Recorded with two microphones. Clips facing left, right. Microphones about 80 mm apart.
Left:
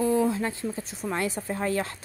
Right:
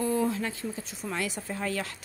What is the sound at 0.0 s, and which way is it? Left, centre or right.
Speech, left.